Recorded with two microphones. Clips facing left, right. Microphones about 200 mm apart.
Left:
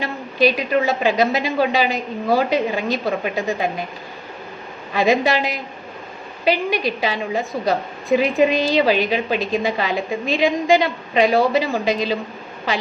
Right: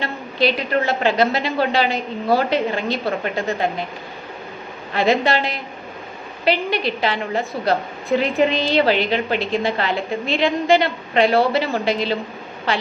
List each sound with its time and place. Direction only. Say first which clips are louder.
0.0 s a woman's voice: left 2 dB; 15° left (ahead or behind)
4.9 s a woman's voice: left 1 dB; 15° left (ahead or behind)